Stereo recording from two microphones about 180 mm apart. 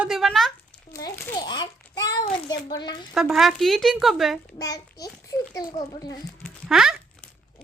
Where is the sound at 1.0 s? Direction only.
15° left (ahead or behind).